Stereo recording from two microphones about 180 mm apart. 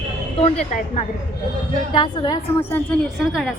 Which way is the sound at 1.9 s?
25° left (ahead or behind).